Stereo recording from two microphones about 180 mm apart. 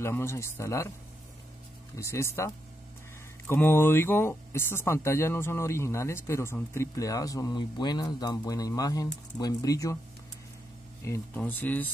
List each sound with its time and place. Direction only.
0.0 s speech: 15° left (ahead or behind)
2.0 s speech: 15° left (ahead or behind)
11.1 s speech: 10° left (ahead or behind)